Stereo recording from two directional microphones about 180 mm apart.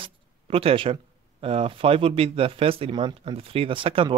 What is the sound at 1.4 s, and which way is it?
Speech, 30° right (ahead or behind).